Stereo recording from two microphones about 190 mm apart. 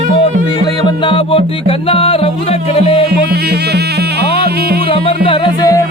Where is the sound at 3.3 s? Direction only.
60° right (ahead or behind).